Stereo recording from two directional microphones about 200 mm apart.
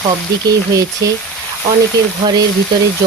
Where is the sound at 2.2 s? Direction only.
20° right (ahead or behind).